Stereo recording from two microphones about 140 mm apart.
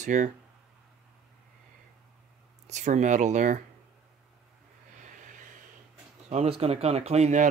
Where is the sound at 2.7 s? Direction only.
60° right (ahead or behind).